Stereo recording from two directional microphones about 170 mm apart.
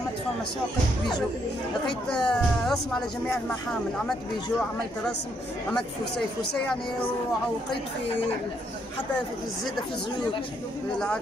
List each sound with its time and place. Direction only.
1.9 s speech: 5° left (ahead or behind)